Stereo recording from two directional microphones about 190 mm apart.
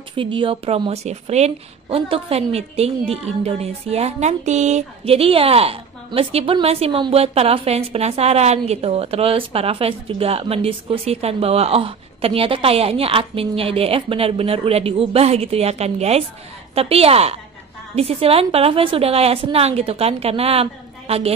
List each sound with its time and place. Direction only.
0.1 s speech: 25° right (ahead or behind)